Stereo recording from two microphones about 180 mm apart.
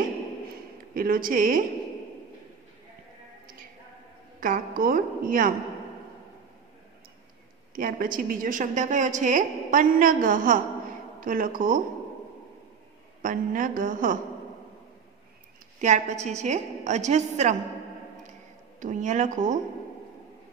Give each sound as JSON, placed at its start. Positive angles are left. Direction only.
{"t": 0.9, "sound": "a woman's voice", "side_deg": -50}
{"t": 4.4, "sound": "a woman's voice", "side_deg": -50}
{"t": 7.7, "sound": "a woman's voice", "side_deg": -50}
{"t": 13.2, "sound": "a woman's voice", "side_deg": -50}
{"t": 15.8, "sound": "a woman's voice", "side_deg": -40}
{"t": 18.8, "sound": "a woman's voice", "side_deg": -45}